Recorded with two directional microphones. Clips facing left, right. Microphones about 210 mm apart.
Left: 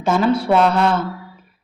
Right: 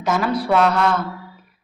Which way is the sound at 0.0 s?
25° left (ahead or behind).